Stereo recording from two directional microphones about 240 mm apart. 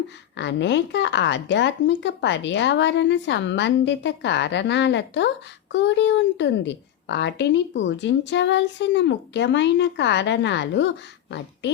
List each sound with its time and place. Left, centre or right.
0.3 s a woman's voice: left